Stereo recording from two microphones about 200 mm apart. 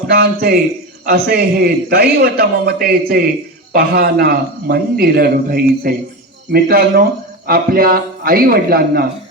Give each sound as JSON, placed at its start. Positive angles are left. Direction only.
{"t": 0.1, "sound": "a man's voice", "side_deg": -50}